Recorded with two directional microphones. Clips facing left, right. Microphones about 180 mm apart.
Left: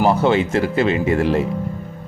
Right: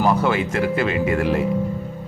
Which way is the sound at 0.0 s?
25° left (ahead or behind).